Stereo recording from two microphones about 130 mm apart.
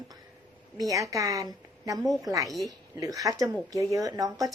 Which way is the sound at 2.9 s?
25° right (ahead or behind).